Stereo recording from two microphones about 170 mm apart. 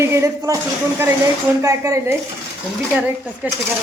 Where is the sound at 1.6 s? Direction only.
20° right (ahead or behind).